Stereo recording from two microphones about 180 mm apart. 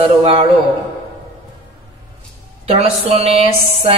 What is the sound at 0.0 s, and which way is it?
Speech, 35° right (ahead or behind).